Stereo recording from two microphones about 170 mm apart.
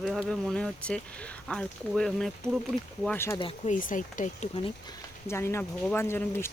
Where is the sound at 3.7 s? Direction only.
50° left (ahead or behind).